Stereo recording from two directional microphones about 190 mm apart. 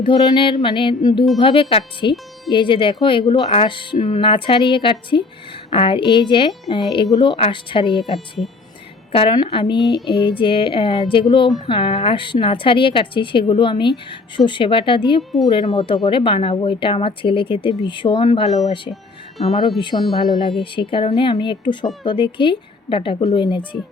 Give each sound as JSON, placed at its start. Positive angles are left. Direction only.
{"t": 0.0, "sound": "speech", "side_deg": 25}
{"t": 9.1, "sound": "speech", "side_deg": 25}
{"t": 19.8, "sound": "speech", "side_deg": 25}